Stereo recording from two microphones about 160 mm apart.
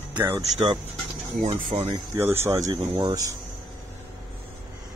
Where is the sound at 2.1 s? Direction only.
15° right (ahead or behind).